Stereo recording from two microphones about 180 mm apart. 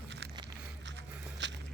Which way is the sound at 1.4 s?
85° right.